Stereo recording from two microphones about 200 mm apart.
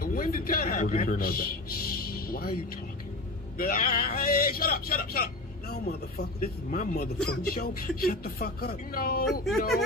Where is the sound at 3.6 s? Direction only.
45° left (ahead or behind).